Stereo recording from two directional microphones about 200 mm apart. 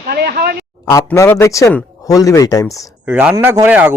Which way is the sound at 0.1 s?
50° right (ahead or behind).